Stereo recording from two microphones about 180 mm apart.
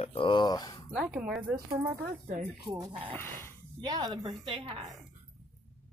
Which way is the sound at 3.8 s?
20° right (ahead or behind).